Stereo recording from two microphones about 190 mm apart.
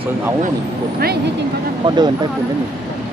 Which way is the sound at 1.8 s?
25° right (ahead or behind).